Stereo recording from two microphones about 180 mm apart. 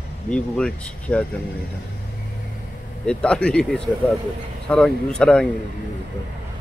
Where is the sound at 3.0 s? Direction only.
5° left (ahead or behind).